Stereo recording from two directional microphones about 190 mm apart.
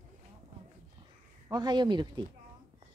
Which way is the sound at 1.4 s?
20° right (ahead or behind).